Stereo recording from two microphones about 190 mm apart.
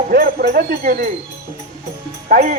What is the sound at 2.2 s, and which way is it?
Music, 45° right (ahead or behind).